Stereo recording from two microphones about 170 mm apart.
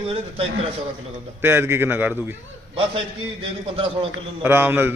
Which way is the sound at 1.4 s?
15° right (ahead or behind).